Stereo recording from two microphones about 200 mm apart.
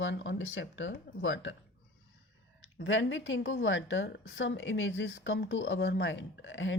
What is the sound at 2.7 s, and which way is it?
A woman's voice, 70° left (ahead or behind).